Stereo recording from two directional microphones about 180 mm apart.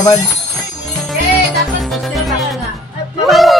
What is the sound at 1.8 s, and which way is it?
Music, centre (ahead or behind).